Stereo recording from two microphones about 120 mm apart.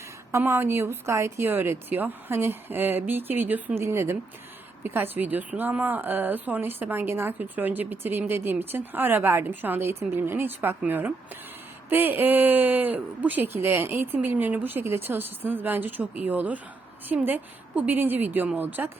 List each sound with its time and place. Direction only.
0.3 s a woman's voice: 20° right (ahead or behind)